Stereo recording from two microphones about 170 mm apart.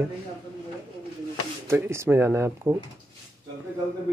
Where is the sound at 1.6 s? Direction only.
15° right (ahead or behind).